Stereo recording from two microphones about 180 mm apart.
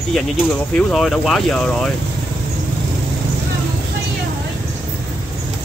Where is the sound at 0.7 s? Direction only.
Centre (ahead or behind).